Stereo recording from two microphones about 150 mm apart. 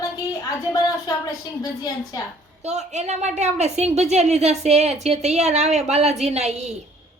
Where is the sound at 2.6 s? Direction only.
50° right (ahead or behind).